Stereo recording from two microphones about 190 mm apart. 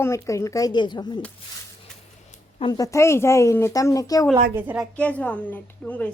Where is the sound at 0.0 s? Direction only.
15° left (ahead or behind).